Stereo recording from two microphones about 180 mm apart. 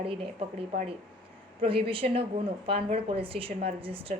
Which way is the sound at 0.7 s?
35° right (ahead or behind).